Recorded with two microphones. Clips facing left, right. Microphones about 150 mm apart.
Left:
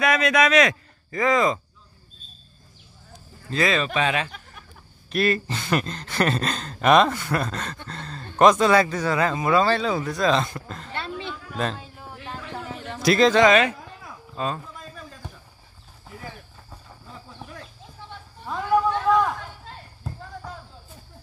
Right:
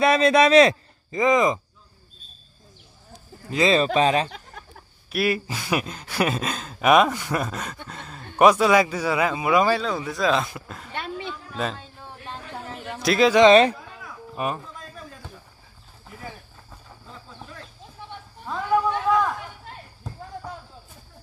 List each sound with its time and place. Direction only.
0.0 s a man's voice: 30° right (ahead or behind)
3.4 s speech: 20° right (ahead or behind)
3.7 s speech: 35° right (ahead or behind)
5.1 s speech: 10° right (ahead or behind)
9.8 s speech: centre (ahead or behind)
12.8 s speech: 5° right (ahead or behind)
13.5 s speech: 35° right (ahead or behind)
14.3 s speech: 20° right (ahead or behind)
18.5 s a sound: centre (ahead or behind)